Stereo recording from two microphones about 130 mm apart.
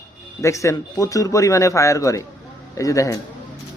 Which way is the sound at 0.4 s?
25° left (ahead or behind).